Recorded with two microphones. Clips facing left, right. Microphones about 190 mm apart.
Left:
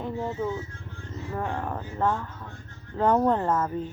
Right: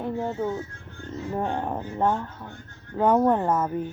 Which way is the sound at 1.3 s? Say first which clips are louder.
Right 3 dB; 25° right (ahead or behind).